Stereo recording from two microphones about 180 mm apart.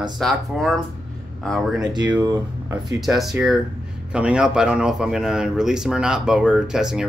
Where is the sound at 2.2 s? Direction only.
20° right (ahead or behind).